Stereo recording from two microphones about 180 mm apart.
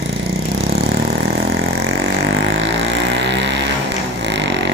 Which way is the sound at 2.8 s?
75° right (ahead or behind).